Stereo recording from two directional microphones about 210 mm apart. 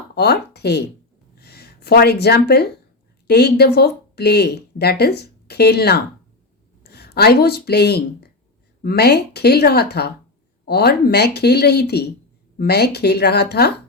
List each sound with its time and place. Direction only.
0.2 s speech: 50° left (ahead or behind)